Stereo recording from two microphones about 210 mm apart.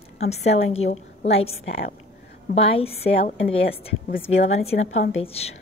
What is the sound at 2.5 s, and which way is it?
A woman's voice, 25° left (ahead or behind).